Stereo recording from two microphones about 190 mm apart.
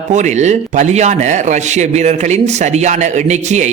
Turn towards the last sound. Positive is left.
turn(degrees=-40)  # may be behind; listen again after turning